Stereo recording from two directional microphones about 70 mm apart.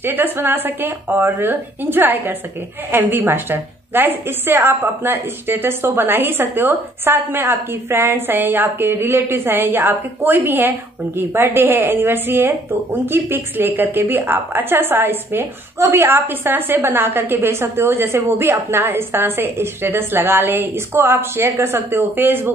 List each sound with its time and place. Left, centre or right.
0.0 s a woman's voice: right